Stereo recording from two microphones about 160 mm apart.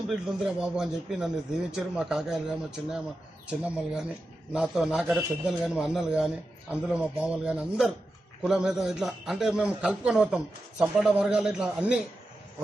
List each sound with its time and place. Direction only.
0.1 s a man's voice: 5° right (ahead or behind)